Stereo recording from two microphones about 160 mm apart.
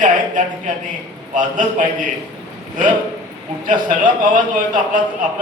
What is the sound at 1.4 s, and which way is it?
Speech, 55° right (ahead or behind).